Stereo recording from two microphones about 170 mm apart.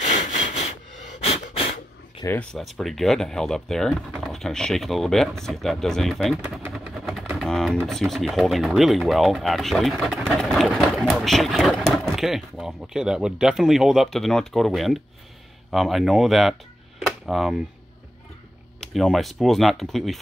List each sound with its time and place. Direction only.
1.2 s a sound: 35° left (ahead or behind)
2.2 s speech: 10° left (ahead or behind)
6.4 s vehicle: 10° right (ahead or behind)
6.7 s speech: centre (ahead or behind)
17.0 s a sound: centre (ahead or behind)
18.8 s speech: centre (ahead or behind)